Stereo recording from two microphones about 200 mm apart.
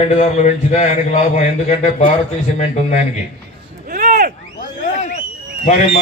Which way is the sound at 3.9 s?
45° right (ahead or behind).